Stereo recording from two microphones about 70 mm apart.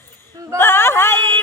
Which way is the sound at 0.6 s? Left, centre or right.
Left.